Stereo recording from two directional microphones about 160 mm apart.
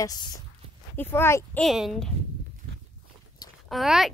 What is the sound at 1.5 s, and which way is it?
Speech, centre (ahead or behind).